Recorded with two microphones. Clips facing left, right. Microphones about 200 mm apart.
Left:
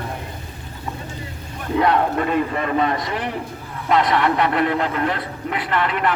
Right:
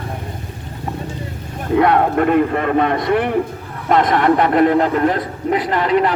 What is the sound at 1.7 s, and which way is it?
A man's voice, 55° right (ahead or behind).